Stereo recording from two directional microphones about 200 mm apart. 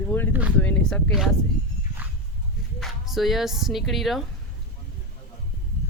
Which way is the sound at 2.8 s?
Centre (ahead or behind).